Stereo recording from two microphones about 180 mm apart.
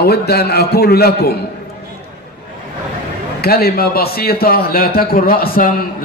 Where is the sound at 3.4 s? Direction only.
60° left (ahead or behind).